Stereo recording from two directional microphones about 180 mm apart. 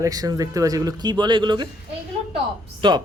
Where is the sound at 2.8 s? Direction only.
25° right (ahead or behind).